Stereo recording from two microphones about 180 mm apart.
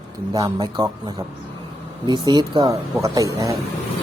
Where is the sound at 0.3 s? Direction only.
20° right (ahead or behind).